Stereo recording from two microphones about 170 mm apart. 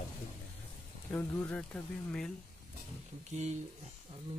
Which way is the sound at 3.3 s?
40° right (ahead or behind).